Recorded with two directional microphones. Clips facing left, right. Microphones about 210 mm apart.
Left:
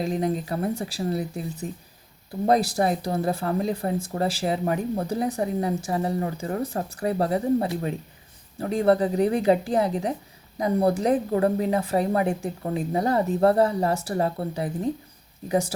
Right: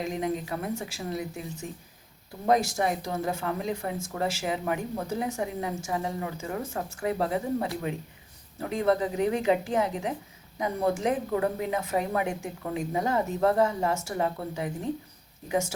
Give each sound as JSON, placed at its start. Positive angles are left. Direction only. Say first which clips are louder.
{"t": 0.0, "sound": "speech", "louder": "left 4 dB", "side_deg": 35}